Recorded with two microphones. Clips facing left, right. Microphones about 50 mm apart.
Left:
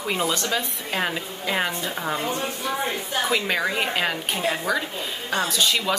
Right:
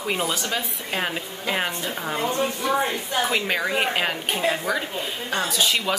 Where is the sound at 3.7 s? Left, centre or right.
Centre.